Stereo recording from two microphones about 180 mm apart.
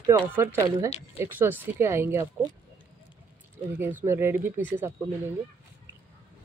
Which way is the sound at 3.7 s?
10° right (ahead or behind).